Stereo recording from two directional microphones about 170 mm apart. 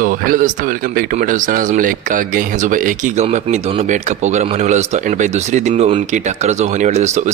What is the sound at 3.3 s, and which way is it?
Speech, 40° right (ahead or behind).